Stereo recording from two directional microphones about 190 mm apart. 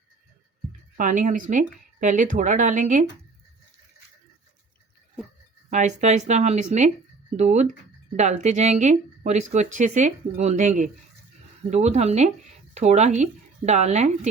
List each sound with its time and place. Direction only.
0.9 s speech: 40° right (ahead or behind)
5.7 s speech: 40° right (ahead or behind)